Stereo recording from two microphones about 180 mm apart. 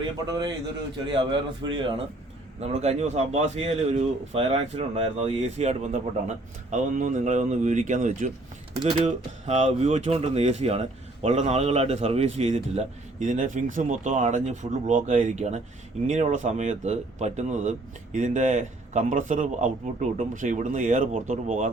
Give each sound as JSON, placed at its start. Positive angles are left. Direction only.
{"t": 1.1, "sound": "a man's voice", "side_deg": -30}
{"t": 8.8, "sound": "a man's voice", "side_deg": -25}
{"t": 9.5, "sound": "speech", "side_deg": -40}